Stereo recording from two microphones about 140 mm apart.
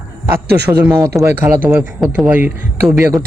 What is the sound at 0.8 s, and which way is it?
Speech, 20° right (ahead or behind).